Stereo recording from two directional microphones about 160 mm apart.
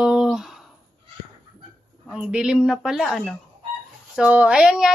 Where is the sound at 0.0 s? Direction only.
5° right (ahead or behind).